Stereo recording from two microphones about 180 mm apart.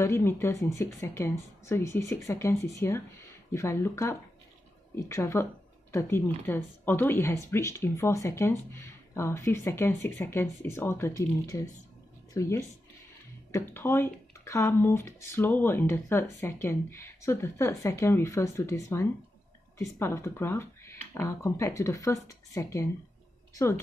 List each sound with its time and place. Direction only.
0.0 s a woman's voice: 15° left (ahead or behind)